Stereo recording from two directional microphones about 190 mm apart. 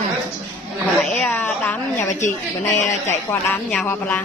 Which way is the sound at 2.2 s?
40° left (ahead or behind).